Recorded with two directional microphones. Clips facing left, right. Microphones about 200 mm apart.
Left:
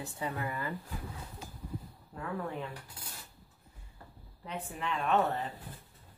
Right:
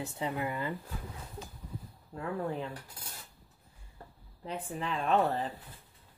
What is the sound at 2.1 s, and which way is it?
Speech, 30° right (ahead or behind).